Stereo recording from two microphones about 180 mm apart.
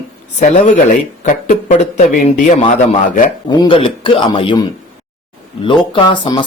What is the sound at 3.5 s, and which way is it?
A man's voice, 25° left (ahead or behind).